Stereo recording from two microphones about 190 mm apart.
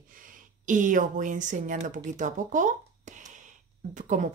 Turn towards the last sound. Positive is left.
turn(degrees=-40)  # may be behind; listen again after turning